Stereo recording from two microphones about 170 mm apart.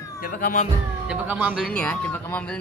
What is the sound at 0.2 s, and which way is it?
Speech, 55° left (ahead or behind).